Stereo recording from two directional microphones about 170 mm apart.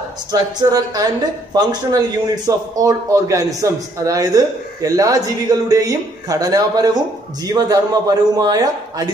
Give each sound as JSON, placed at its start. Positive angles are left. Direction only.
{"t": 0.3, "sound": "a man's voice", "side_deg": -25}